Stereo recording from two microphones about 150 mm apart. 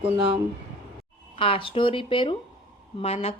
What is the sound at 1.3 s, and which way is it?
Speech, 35° left (ahead or behind).